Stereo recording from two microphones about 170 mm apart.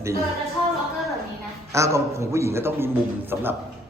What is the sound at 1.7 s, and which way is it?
A man's voice, 15° right (ahead or behind).